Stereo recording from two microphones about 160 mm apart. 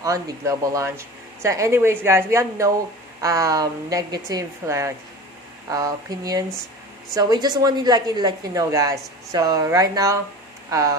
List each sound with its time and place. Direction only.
0.0 s speech: 20° right (ahead or behind)